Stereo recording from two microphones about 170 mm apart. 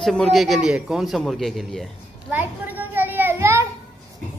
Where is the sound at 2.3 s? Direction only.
10° right (ahead or behind).